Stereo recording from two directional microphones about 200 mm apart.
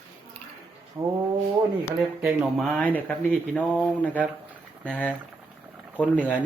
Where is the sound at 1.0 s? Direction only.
20° right (ahead or behind).